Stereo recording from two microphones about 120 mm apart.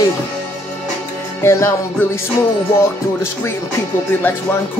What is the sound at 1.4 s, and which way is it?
Music, 20° left (ahead or behind).